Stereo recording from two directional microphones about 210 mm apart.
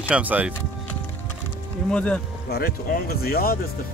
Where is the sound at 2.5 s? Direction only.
45° left (ahead or behind).